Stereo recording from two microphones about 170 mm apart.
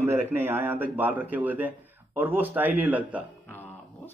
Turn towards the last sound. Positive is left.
turn(degrees=-10)  # may be behind; listen again after turning